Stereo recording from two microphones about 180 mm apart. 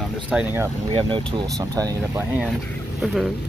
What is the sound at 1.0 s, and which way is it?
Speech, 30° right (ahead or behind).